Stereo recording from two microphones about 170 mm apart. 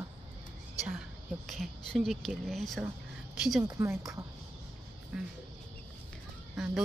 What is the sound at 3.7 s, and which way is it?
Speech, 15° right (ahead or behind).